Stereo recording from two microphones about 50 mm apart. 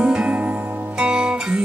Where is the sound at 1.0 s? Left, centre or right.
Centre.